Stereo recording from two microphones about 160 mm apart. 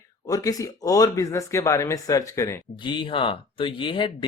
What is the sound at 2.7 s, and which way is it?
Speech, 30° left (ahead or behind).